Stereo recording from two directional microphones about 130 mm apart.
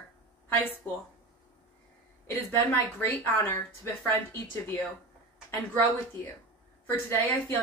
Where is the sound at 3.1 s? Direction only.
20° left (ahead or behind).